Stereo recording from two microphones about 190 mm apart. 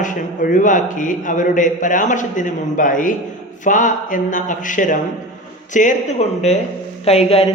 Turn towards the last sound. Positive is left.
turn(degrees=30)  # may be behind; listen again after turning